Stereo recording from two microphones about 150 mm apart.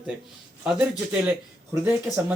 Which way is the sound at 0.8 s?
10° right (ahead or behind).